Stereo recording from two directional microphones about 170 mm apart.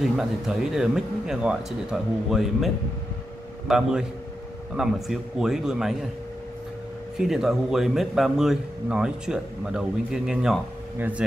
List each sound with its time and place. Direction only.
0.0 s speech: 5° right (ahead or behind)
7.2 s speech: centre (ahead or behind)